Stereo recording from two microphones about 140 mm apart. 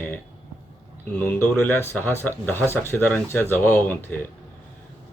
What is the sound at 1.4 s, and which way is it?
Speech, 15° left (ahead or behind).